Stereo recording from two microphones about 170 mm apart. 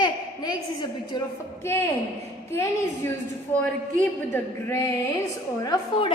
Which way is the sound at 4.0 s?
15° left (ahead or behind).